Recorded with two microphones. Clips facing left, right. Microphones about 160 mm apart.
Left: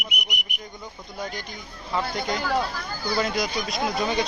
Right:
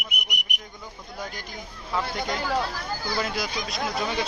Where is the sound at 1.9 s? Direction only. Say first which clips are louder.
Left 1 dB; centre (ahead or behind).